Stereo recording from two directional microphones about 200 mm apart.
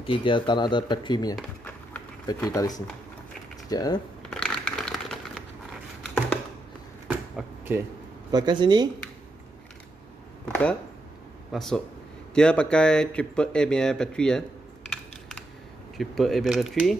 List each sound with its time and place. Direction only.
0.0 s speech: 25° left (ahead or behind)
1.3 s a sound: 5° left (ahead or behind)
2.2 s speech: 20° left (ahead or behind)
4.2 s a sound: 5° left (ahead or behind)
7.1 s a sound: 10° right (ahead or behind)
8.3 s speech: 20° right (ahead or behind)
10.5 s speech: 5° left (ahead or behind)
14.9 s computer keyboard: 5° left (ahead or behind)
16.0 s speech: centre (ahead or behind)